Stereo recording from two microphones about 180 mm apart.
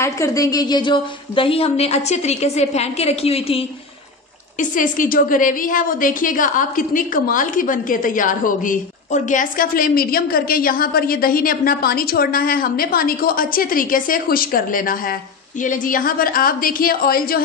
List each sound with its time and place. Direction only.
0.0 s a woman's voice: 15° left (ahead or behind); by 3.6 s 35° left (ahead or behind)
4.6 s a woman's voice: 50° left (ahead or behind)